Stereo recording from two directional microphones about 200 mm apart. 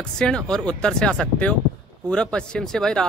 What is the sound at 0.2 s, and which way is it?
Speech, 5° left (ahead or behind).